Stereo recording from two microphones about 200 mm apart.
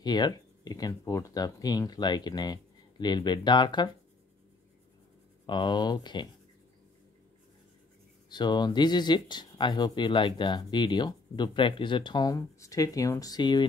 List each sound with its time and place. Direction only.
0.0 s speech: 20° left (ahead or behind)
5.5 s speech: 20° left (ahead or behind)
8.3 s speech: 20° left (ahead or behind)